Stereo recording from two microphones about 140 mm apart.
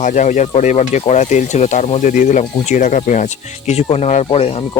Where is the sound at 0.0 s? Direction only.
65° left (ahead or behind).